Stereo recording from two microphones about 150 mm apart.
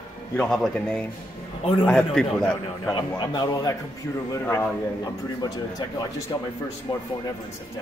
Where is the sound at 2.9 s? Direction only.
30° left (ahead or behind).